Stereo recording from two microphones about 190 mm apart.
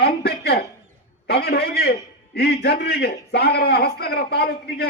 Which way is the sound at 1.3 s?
60° left (ahead or behind).